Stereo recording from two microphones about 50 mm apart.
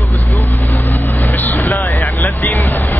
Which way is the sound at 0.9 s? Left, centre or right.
Left.